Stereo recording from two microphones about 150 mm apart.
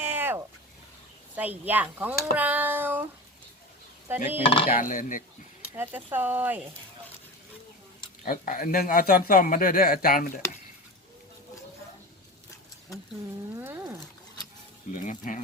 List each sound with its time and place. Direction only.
0.0 s a sound: 15° right (ahead or behind)
1.4 s speech: 10° right (ahead or behind)
4.1 s speech: 15° right (ahead or behind)
4.8 s speech: 60° left (ahead or behind)
5.7 s speech: 15° right (ahead or behind)
8.2 s a man's voice: 70° left (ahead or behind)
13.6 s wild animals: 15° right (ahead or behind)
15.0 s speech: 60° left (ahead or behind)